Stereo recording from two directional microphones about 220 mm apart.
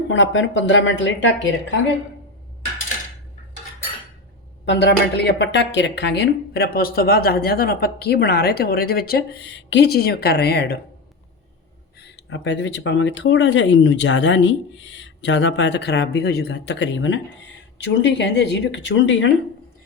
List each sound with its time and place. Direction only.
0.1 s speech: 60° left (ahead or behind)
4.6 s speech: 50° left (ahead or behind)
11.9 s speech: 50° left (ahead or behind)